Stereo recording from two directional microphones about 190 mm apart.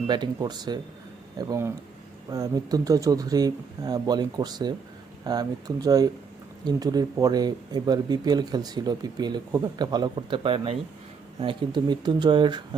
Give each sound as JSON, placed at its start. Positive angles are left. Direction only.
{"t": 0.1, "sound": "speech", "side_deg": -25}